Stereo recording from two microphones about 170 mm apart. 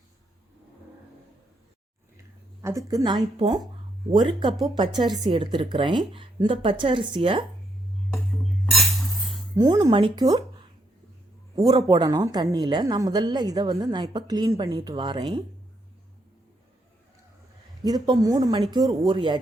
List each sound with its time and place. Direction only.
2.6 s speech: 20° right (ahead or behind)
8.7 s music: centre (ahead or behind)
9.6 s speech: 25° right (ahead or behind)
11.6 s a man's voice: 25° right (ahead or behind)
17.8 s speech: 25° right (ahead or behind)